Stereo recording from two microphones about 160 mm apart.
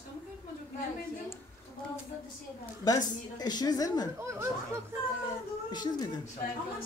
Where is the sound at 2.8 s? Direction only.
25° left (ahead or behind).